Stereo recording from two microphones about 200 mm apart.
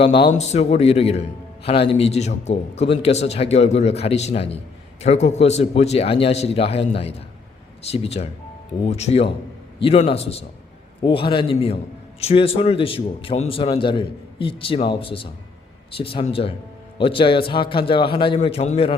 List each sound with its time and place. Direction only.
0.0 s a man's voice: 25° left (ahead or behind)